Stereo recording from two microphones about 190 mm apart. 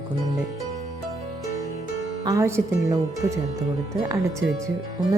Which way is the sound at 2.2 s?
15° right (ahead or behind).